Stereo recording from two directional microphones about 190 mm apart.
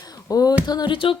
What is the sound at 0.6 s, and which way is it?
Child singing, 25° left (ahead or behind).